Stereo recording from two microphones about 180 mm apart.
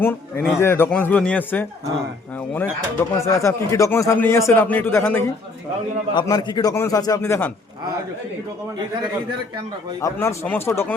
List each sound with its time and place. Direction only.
0.0 s a man's voice: 10° left (ahead or behind)
3.2 s speech: 15° left (ahead or behind)
6.1 s a man's voice: 25° left (ahead or behind)
10.0 s speech: 15° left (ahead or behind)